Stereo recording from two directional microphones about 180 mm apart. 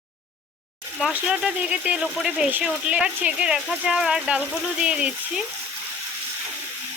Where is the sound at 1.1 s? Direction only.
5° right (ahead or behind).